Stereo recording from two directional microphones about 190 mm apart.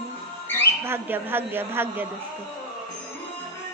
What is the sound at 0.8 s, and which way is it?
A woman's voice, 10° right (ahead or behind).